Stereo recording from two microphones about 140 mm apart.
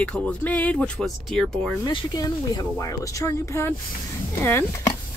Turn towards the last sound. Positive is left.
turn(degrees=20)  # may be behind; listen again after turning